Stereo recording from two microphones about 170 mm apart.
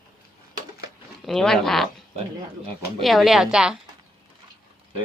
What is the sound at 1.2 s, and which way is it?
Speech, centre (ahead or behind).